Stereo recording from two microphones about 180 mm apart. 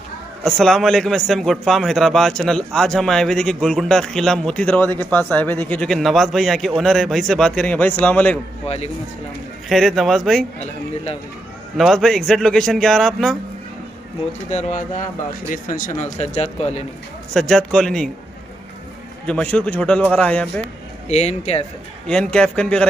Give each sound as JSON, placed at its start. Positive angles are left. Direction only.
{"t": 0.4, "sound": "a man's voice", "side_deg": 0}
{"t": 8.6, "sound": "speech", "side_deg": 35}
{"t": 9.7, "sound": "a man's voice", "side_deg": 0}
{"t": 11.7, "sound": "a man's voice", "side_deg": 0}
{"t": 14.5, "sound": "speech", "side_deg": 40}
{"t": 16.0, "sound": "speech", "side_deg": 40}
{"t": 17.3, "sound": "a man's voice", "side_deg": 5}
{"t": 19.2, "sound": "a man's voice", "side_deg": 5}
{"t": 21.1, "sound": "speech", "side_deg": 35}
{"t": 22.0, "sound": "a man's voice", "side_deg": 5}